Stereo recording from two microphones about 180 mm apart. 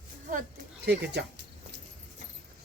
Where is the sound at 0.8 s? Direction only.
65° right (ahead or behind).